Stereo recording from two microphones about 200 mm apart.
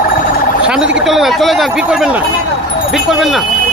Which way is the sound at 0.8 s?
65° right (ahead or behind).